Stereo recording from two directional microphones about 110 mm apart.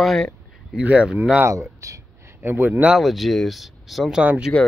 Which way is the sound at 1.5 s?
30° right (ahead or behind).